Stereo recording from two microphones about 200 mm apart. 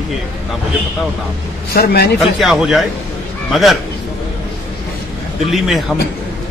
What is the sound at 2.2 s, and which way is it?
Speech, centre (ahead or behind).